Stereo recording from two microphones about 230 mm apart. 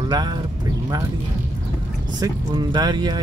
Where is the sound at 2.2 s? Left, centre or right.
Centre.